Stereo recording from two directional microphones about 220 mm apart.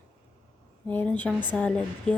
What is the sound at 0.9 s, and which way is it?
Speech, 10° left (ahead or behind).